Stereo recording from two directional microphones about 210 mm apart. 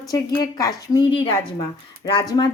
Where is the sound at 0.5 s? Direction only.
20° left (ahead or behind).